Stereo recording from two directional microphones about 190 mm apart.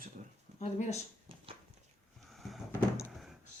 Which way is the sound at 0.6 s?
35° left (ahead or behind).